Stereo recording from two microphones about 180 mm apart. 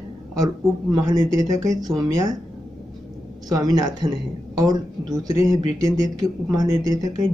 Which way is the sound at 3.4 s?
20° right (ahead or behind).